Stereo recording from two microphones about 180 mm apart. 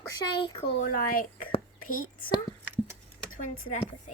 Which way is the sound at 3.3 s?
50° left (ahead or behind).